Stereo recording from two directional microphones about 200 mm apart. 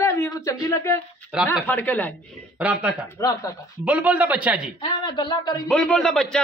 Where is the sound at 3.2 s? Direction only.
15° left (ahead or behind).